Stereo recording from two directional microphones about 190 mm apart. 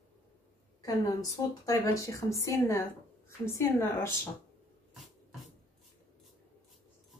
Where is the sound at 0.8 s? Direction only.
20° left (ahead or behind).